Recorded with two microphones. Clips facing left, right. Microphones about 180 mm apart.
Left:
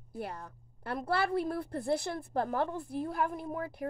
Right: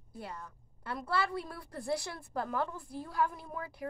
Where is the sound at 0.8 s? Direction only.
55° left (ahead or behind).